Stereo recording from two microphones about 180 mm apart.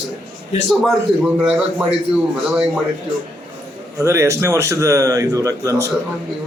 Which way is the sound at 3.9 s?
15° right (ahead or behind).